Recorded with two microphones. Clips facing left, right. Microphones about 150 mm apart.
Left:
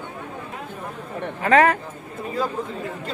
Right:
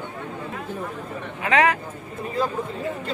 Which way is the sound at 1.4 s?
40° left (ahead or behind).